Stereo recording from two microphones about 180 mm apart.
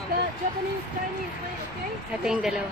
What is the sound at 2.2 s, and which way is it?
Speech, 5° right (ahead or behind).